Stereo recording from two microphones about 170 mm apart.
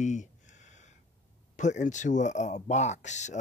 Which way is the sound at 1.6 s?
45° left (ahead or behind).